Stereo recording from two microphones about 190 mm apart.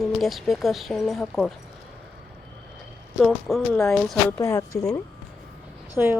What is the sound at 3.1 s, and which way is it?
Speech, centre (ahead or behind).